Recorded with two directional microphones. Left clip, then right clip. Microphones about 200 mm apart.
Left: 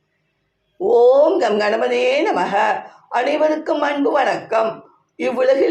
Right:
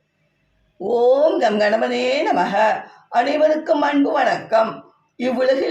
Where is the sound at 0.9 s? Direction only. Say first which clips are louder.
Left 3 dB; 15° left (ahead or behind).